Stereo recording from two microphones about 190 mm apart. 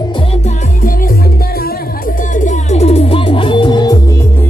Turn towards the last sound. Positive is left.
turn(degrees=25)  # may be behind; listen again after turning